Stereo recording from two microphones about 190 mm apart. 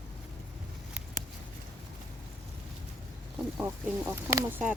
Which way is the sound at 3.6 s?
15° right (ahead or behind).